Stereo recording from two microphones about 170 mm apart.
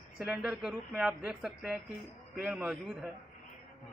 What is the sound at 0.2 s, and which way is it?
A man's voice, 5° right (ahead or behind).